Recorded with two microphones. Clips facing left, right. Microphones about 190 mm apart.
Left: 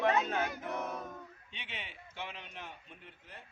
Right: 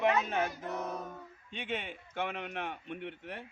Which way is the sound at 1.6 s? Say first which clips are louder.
Right 11 dB; 50° right (ahead or behind).